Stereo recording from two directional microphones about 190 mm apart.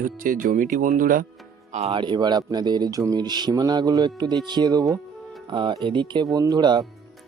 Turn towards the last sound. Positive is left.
turn(degrees=-20)  # may be behind; listen again after turning